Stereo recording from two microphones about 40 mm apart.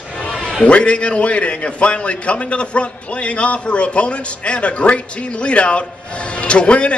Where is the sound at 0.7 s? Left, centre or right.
Left.